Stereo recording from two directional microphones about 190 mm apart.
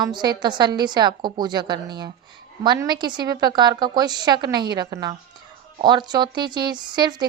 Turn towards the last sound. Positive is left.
turn(degrees=-25)  # may be behind; listen again after turning